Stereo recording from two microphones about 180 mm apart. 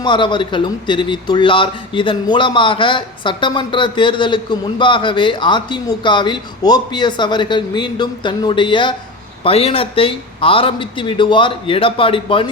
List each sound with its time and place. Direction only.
0.0 s speech: 25° left (ahead or behind)